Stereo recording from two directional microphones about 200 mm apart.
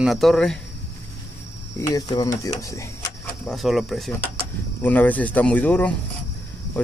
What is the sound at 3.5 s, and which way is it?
Speech, centre (ahead or behind).